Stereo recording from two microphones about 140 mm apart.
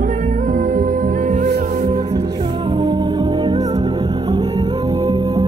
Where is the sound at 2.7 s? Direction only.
30° right (ahead or behind).